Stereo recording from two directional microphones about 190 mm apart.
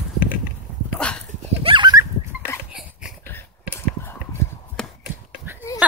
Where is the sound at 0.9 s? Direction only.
5° left (ahead or behind).